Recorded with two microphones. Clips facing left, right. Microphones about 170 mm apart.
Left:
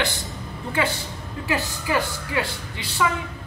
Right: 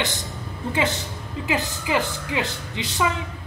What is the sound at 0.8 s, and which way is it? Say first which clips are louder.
Speech: even; 20° right (ahead or behind).